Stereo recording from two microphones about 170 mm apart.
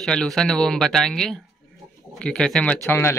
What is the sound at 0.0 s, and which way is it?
Speech, 5° left (ahead or behind).